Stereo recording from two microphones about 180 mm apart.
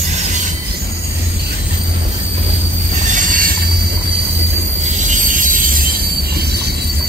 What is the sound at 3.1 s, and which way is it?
Train wheels squealing, 45° right (ahead or behind).